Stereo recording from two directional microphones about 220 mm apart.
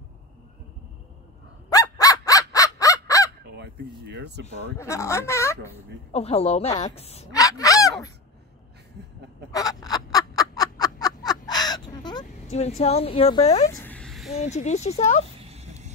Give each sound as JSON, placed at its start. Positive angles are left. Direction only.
{"t": 1.7, "sound": "fowl", "side_deg": 15}
{"t": 3.4, "sound": "a sound", "side_deg": -50}
{"t": 4.7, "sound": "speech", "side_deg": 15}
{"t": 6.1, "sound": "a woman's voice", "side_deg": 30}
{"t": 7.3, "sound": "a sound", "side_deg": 15}
{"t": 9.5, "sound": "fowl", "side_deg": 15}
{"t": 12.5, "sound": "a woman's voice", "side_deg": 30}
{"t": 13.7, "sound": "a sound", "side_deg": 10}
{"t": 14.4, "sound": "speech", "side_deg": 30}
{"t": 15.4, "sound": "dog", "side_deg": -30}